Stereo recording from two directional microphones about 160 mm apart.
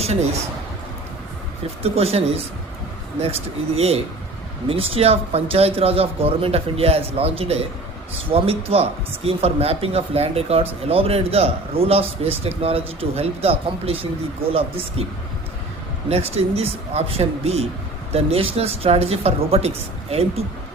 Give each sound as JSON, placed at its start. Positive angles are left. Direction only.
{"t": 1.6, "sound": "speech", "side_deg": -40}
{"t": 16.0, "sound": "speech", "side_deg": -40}